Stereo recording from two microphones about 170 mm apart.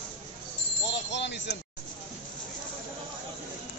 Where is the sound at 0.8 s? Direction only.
90° left.